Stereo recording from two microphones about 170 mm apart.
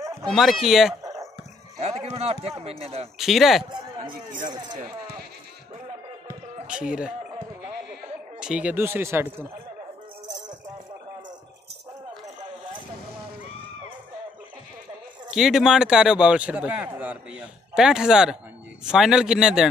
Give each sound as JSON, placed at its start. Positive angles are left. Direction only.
{"t": 0.3, "sound": "a man's voice", "side_deg": 0}
{"t": 1.8, "sound": "speech", "side_deg": -35}
{"t": 3.2, "sound": "a man's voice", "side_deg": 0}
{"t": 6.7, "sound": "speech", "side_deg": -5}
{"t": 8.4, "sound": "speech", "side_deg": -5}
{"t": 15.2, "sound": "a man's voice", "side_deg": -5}